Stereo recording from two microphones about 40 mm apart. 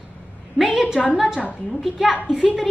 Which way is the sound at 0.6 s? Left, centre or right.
Centre.